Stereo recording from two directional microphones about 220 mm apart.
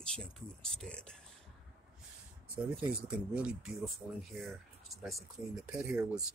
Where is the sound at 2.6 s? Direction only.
5° right (ahead or behind).